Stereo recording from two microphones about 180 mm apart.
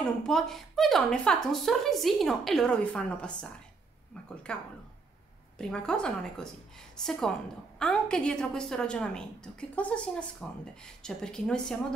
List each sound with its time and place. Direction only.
0.0 s a woman's voice: centre (ahead or behind)
4.5 s a woman's voice: 5° left (ahead or behind)